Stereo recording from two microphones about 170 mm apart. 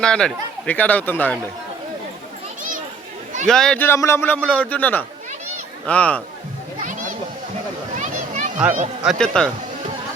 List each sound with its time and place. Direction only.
0.0 s speech: 5° left (ahead or behind)
3.4 s speech: 5° left (ahead or behind)
7.9 s a sound: 45° right (ahead or behind)
9.0 s speech: 5° left (ahead or behind)